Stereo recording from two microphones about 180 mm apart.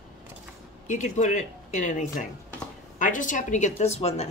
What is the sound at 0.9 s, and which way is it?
A woman's voice, 45° left (ahead or behind).